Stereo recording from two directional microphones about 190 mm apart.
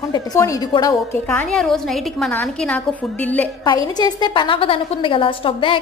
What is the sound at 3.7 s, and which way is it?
A woman's voice, 20° left (ahead or behind).